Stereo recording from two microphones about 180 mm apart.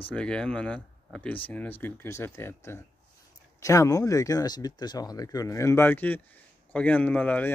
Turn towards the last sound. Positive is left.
turn(degrees=10)  # may be behind; listen again after turning